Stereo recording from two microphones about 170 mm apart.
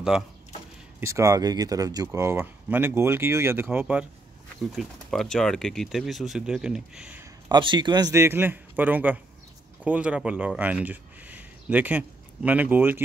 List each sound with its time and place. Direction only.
0.1 s speech: 5° right (ahead or behind)
1.0 s speech: 20° right (ahead or behind)
4.7 s speech: centre (ahead or behind)
7.4 s speech: 25° right (ahead or behind)